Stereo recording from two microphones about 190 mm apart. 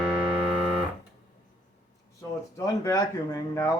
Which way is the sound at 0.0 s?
5° right (ahead or behind).